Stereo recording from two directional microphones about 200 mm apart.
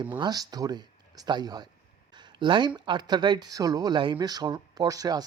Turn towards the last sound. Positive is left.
turn(degrees=-20)  # may be behind; listen again after turning